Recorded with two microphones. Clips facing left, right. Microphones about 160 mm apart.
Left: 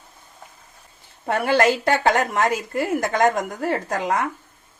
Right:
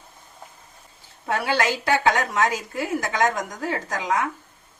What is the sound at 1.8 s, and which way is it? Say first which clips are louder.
A woman's voice: left 2 dB; 55° left (ahead or behind).